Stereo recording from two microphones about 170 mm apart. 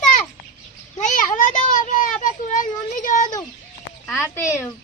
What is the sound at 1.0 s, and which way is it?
Speech, 50° left (ahead or behind).